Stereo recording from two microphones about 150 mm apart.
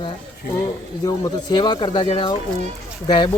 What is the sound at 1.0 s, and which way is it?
Speech, 25° left (ahead or behind).